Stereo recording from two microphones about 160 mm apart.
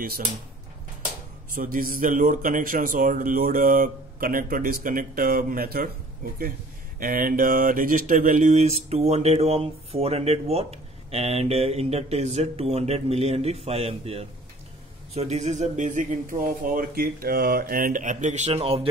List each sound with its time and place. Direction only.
1.5 s a man's voice: 60° right (ahead or behind)
7.0 s speech: 60° right (ahead or behind); by 18.9 s 35° right (ahead or behind)